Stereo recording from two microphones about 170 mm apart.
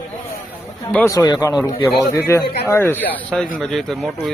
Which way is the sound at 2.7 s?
15° left (ahead or behind).